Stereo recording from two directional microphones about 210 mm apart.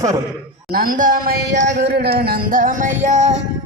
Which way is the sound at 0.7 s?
40° right (ahead or behind).